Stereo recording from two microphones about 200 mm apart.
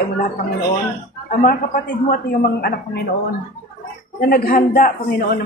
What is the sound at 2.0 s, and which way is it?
Speech, 50° left (ahead or behind).